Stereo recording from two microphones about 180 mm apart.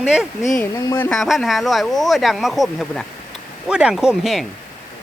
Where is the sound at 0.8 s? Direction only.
15° left (ahead or behind).